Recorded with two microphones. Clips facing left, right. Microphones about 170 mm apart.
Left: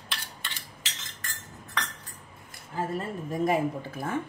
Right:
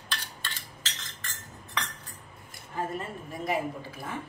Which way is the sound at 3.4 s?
50° left (ahead or behind).